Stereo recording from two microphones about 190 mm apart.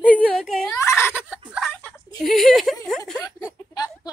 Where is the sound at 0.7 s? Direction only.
15° left (ahead or behind).